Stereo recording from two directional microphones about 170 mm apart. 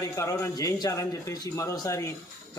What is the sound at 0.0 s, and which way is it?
A man's voice, 15° left (ahead or behind).